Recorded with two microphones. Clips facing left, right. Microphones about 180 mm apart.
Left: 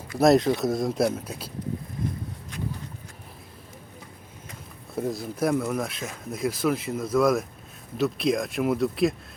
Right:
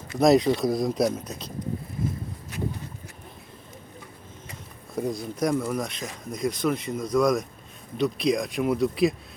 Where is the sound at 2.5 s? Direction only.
5° right (ahead or behind).